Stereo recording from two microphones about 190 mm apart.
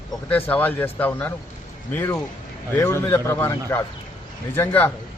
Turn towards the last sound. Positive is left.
turn(degrees=10)  # may be behind; listen again after turning